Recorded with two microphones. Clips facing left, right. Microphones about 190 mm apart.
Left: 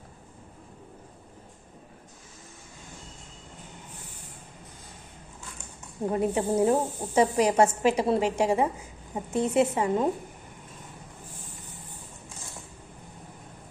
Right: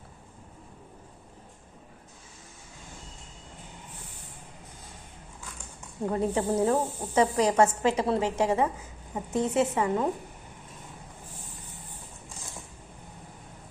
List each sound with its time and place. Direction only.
6.1 s speech: 15° left (ahead or behind)